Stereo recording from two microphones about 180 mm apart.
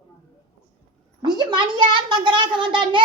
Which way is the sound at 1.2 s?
25° right (ahead or behind).